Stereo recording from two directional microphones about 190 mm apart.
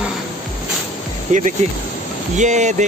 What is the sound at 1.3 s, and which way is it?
Speech, 40° right (ahead or behind).